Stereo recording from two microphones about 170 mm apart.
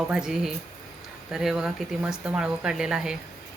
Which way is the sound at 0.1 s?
5° right (ahead or behind).